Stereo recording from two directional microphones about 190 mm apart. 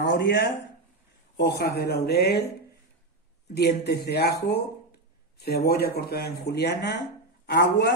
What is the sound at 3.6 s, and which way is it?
Speech, 60° left (ahead or behind).